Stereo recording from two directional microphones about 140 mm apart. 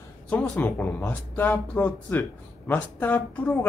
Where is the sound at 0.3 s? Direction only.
10° left (ahead or behind).